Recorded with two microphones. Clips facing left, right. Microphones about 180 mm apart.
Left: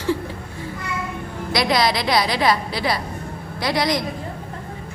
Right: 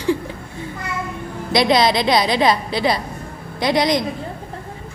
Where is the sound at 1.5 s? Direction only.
25° right (ahead or behind).